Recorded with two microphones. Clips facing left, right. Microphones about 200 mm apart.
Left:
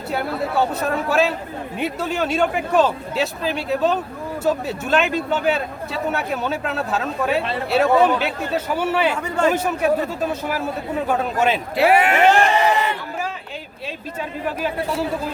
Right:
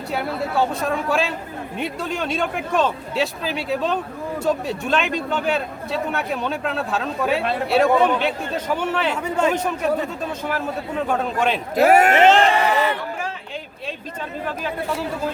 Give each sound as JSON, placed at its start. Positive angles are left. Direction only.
{"t": 0.1, "sound": "a man's voice", "side_deg": 0}
{"t": 11.7, "sound": "speech", "side_deg": -45}
{"t": 12.1, "sound": "crowd", "side_deg": -20}
{"t": 14.2, "sound": "speech", "side_deg": 10}